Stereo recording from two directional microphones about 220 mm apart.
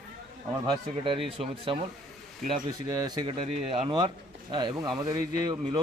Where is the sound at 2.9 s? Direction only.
20° right (ahead or behind).